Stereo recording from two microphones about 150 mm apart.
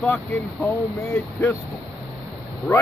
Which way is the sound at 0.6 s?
15° left (ahead or behind).